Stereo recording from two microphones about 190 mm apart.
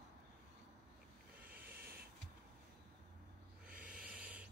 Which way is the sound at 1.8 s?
55° right (ahead or behind).